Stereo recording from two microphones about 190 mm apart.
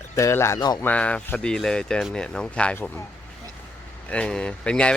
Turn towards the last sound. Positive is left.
turn(degrees=5)  # may be behind; listen again after turning